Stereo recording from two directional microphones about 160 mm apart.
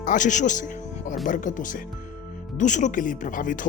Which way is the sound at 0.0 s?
55° left (ahead or behind).